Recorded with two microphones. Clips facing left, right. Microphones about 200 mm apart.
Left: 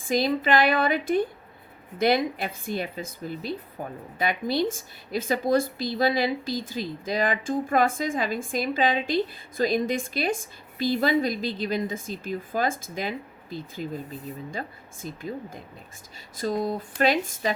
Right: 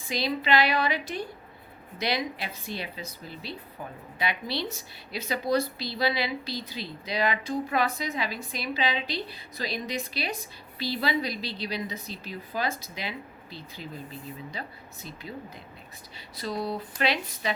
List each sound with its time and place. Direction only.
0.0 s speech: 45° left (ahead or behind)